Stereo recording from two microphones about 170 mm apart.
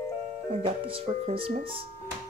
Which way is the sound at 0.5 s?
35° right (ahead or behind).